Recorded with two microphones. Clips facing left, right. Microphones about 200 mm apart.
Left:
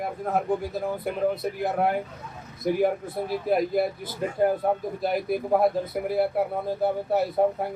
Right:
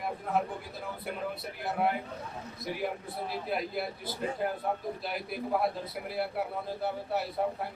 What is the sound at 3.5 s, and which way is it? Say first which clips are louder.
Speech: left 12 dB; 45° left (ahead or behind).